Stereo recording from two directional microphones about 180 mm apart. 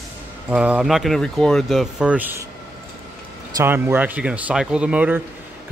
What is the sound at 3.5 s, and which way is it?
Speech, 10° right (ahead or behind).